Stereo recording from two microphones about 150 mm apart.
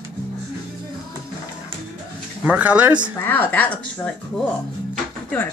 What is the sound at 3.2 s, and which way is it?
Speech, 10° left (ahead or behind).